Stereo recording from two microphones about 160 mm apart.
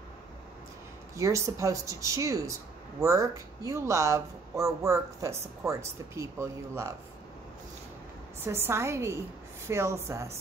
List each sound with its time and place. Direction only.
1.1 s speech: 20° right (ahead or behind)
8.5 s a woman's voice: 15° right (ahead or behind)